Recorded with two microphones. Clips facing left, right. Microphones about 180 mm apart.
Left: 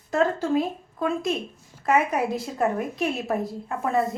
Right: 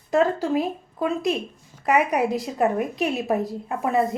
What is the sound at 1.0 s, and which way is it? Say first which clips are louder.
Speech: right 2 dB; 15° right (ahead or behind).